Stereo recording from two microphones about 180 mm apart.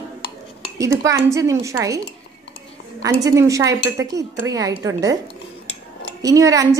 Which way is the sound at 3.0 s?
15° right (ahead or behind).